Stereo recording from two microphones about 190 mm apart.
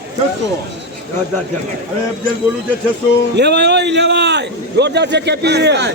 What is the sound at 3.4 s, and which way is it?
A man's voice, 65° right (ahead or behind).